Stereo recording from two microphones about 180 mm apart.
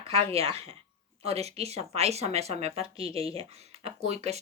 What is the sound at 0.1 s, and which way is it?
A woman's voice, 35° right (ahead or behind).